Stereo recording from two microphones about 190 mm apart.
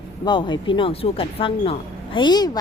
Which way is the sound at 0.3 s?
25° left (ahead or behind).